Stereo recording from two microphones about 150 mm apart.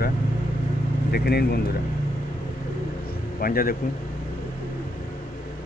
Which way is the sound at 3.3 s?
75° left (ahead or behind).